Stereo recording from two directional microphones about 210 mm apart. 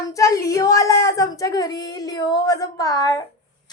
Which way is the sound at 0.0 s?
15° left (ahead or behind).